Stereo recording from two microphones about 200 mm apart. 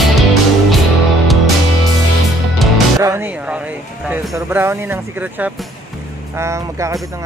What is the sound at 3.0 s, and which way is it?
Speech, 10° right (ahead or behind).